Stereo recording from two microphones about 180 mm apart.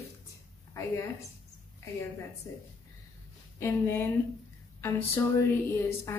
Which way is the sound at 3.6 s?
15° left (ahead or behind).